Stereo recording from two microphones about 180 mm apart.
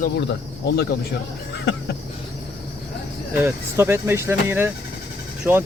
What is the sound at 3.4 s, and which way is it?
Speech, 15° right (ahead or behind).